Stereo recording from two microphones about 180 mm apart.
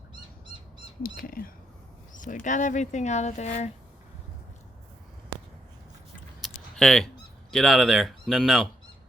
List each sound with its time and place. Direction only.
1.0 s speech: 55° left (ahead or behind)
6.4 s typing: 5° left (ahead or behind)
7.5 s speech: centre (ahead or behind)